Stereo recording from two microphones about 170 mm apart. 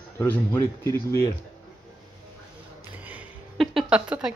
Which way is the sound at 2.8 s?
10° right (ahead or behind).